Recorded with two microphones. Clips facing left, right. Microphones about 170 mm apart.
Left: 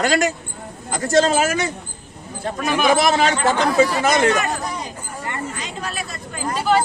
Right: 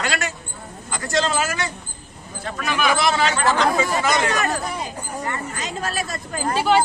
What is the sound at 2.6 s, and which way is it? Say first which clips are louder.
Speech: left 4 dB; 45° left (ahead or behind).